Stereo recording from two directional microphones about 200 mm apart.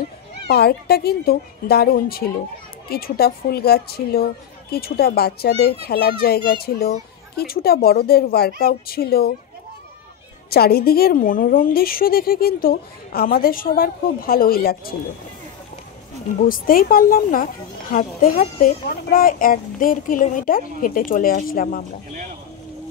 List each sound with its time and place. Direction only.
0.5 s a woman's voice: 50° left (ahead or behind)
10.5 s a woman's voice: 50° left (ahead or behind)
16.3 s a woman's voice: 45° left (ahead or behind)